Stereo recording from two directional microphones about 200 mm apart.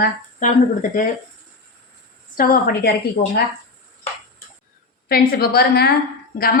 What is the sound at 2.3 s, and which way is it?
Speech, 45° left (ahead or behind).